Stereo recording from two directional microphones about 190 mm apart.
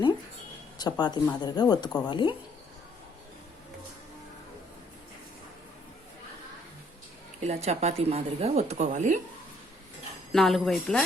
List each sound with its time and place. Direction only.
0.8 s speech: 20° left (ahead or behind)
7.4 s speech: 35° right (ahead or behind)
10.3 s speech: centre (ahead or behind)